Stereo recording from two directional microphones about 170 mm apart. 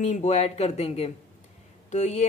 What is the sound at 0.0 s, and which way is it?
A woman's voice, 45° left (ahead or behind).